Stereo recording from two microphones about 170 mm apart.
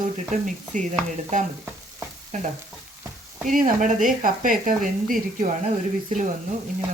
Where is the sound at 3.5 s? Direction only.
50° right (ahead or behind).